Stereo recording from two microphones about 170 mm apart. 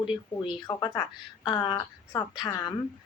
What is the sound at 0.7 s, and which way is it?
A woman's voice, 20° left (ahead or behind).